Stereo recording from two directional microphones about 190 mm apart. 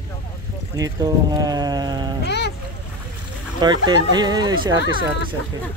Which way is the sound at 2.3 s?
60° left (ahead or behind).